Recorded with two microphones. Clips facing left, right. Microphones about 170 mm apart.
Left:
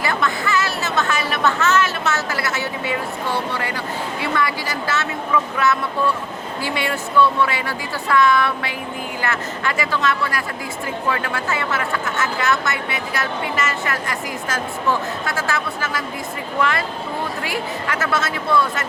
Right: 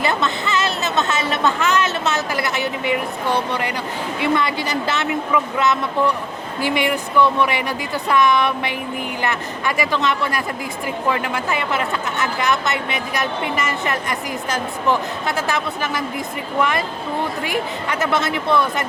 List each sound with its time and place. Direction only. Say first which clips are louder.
0.0 s music: right 1 dB; 20° right (ahead or behind)
4.2 s speech: right 4 dB; 20° right (ahead or behind)